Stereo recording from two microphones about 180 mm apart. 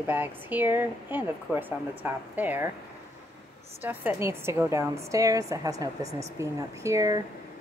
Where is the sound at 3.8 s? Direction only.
10° right (ahead or behind).